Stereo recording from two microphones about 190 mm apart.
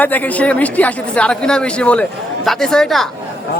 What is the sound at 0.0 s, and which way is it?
Speech, 10° left (ahead or behind).